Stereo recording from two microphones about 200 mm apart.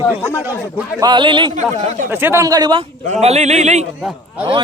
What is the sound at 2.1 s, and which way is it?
Speech, 10° right (ahead or behind).